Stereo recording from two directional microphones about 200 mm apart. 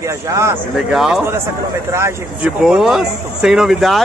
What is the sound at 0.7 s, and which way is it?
Speech, centre (ahead or behind).